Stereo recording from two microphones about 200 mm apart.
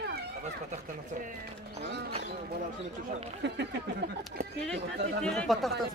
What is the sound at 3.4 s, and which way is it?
Speech, 60° right (ahead or behind).